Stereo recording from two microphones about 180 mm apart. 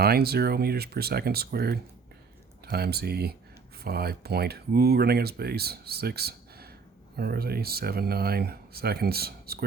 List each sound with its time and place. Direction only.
0.0 s speech: 60° right (ahead or behind)